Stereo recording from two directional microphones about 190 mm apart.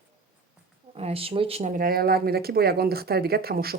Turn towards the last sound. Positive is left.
turn(degrees=-55)  # may be behind; listen again after turning